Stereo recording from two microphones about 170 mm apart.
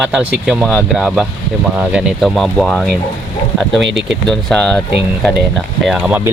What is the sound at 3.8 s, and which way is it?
Speech, 90° right.